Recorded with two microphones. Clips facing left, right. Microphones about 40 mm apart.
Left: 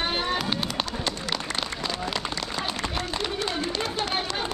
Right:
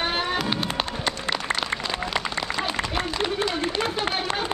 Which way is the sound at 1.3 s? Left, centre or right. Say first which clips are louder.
Right 4 dB; right.